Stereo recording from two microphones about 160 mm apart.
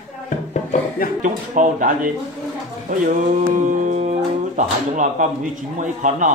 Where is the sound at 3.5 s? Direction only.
55° right (ahead or behind).